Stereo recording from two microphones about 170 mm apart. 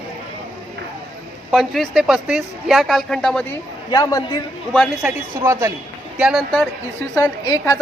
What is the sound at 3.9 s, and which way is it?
Speech, 20° left (ahead or behind).